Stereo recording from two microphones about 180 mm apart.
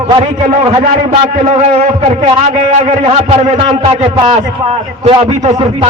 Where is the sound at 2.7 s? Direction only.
35° right (ahead or behind).